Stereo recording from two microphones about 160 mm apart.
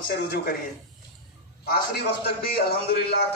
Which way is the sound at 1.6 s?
70° left (ahead or behind).